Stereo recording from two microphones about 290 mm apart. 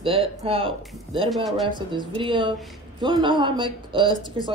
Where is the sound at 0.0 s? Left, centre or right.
Centre.